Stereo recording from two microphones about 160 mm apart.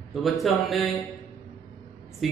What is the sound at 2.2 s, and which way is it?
Speech, centre (ahead or behind).